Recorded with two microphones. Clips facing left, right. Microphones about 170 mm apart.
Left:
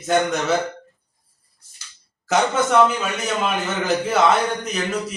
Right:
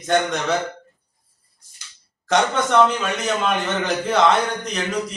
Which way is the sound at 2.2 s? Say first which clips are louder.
Even; 5° left (ahead or behind).